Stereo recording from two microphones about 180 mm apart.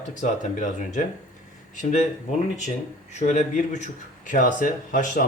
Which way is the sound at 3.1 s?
40° left (ahead or behind).